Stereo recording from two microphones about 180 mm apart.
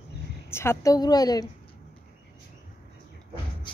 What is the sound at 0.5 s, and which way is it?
A woman's voice, 15° left (ahead or behind).